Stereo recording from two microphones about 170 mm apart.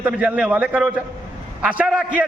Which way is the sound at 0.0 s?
5° right (ahead or behind).